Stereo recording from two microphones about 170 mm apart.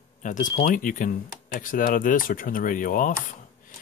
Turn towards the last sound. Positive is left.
turn(degrees=55)  # may be behind; listen again after turning